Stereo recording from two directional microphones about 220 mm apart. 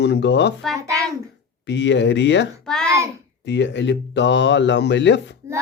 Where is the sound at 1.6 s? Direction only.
55° left (ahead or behind).